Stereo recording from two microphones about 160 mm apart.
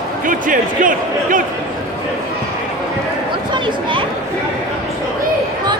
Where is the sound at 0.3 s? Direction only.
55° right (ahead or behind).